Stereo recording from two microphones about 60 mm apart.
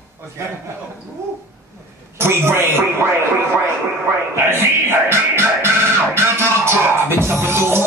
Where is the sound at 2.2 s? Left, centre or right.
Right.